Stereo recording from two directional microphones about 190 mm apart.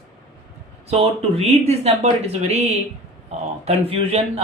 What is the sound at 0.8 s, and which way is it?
Speech, 30° right (ahead or behind).